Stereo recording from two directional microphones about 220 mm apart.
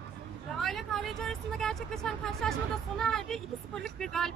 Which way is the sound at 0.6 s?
Centre (ahead or behind).